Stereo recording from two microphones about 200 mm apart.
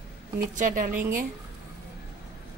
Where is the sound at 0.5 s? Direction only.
40° right (ahead or behind).